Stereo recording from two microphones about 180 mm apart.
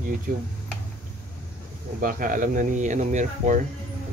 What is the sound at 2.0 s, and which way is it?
Speech, 50° right (ahead or behind).